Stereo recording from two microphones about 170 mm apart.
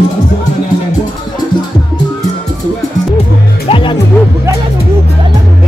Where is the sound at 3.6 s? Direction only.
30° left (ahead or behind).